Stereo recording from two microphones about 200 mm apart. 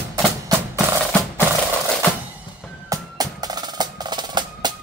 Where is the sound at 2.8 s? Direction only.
20° right (ahead or behind).